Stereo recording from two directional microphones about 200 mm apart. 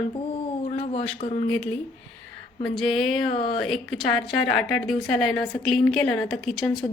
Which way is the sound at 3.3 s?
25° left (ahead or behind).